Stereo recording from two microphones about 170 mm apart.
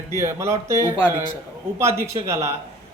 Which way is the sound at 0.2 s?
15° right (ahead or behind).